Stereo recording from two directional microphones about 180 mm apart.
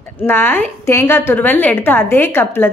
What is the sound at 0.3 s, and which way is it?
A woman's voice, 10° left (ahead or behind).